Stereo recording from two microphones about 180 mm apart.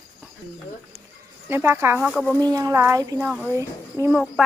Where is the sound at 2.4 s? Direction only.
20° right (ahead or behind).